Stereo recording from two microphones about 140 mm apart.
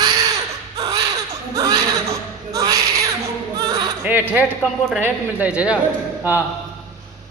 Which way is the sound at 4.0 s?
10° right (ahead or behind).